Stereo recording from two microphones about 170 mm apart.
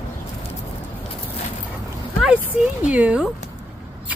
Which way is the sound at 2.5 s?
5° right (ahead or behind).